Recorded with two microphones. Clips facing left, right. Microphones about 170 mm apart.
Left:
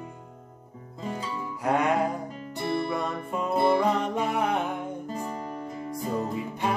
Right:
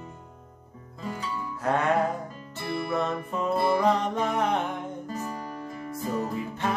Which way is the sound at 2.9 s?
10° left (ahead or behind).